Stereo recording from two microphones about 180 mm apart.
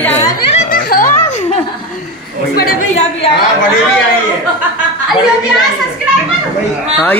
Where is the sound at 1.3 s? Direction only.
40° left (ahead or behind).